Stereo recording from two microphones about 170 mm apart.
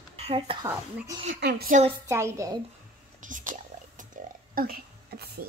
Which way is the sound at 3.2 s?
50° right (ahead or behind).